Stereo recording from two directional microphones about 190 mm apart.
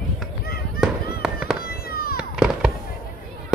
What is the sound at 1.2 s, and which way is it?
Fireworks, centre (ahead or behind).